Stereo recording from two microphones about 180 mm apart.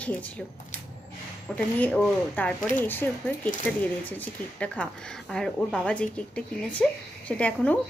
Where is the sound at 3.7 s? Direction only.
5° left (ahead or behind).